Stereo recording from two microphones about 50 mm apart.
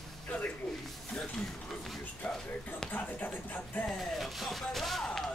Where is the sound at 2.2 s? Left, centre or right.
Left.